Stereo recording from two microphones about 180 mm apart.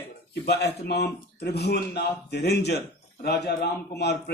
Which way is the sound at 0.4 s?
65° left (ahead or behind).